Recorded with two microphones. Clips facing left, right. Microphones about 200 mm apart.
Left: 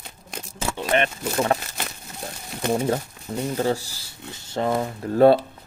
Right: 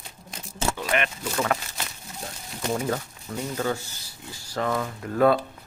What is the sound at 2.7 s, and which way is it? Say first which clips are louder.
Speech: left 4 dB; 30° left (ahead or behind).